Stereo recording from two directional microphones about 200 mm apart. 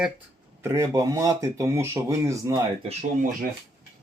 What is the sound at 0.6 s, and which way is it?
Speech, 15° right (ahead or behind).